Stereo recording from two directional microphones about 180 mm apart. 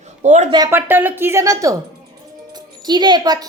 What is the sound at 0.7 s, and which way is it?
A woman's voice, 10° right (ahead or behind).